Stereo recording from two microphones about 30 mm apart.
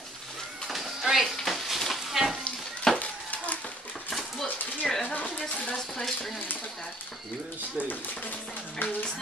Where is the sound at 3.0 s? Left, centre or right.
Left.